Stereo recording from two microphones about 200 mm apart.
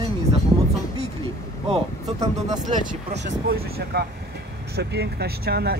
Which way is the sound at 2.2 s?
20° right (ahead or behind).